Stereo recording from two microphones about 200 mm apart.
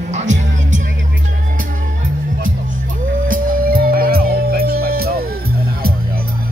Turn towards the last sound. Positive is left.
turn(degrees=-50)  # may be behind; listen again after turning